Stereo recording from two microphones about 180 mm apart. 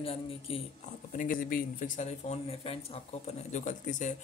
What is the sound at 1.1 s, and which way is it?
Speech, 50° left (ahead or behind).